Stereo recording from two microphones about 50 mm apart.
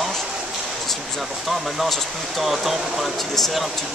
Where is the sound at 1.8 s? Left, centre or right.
Centre.